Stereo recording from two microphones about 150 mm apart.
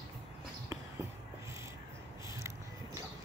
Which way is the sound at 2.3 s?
20° right (ahead or behind).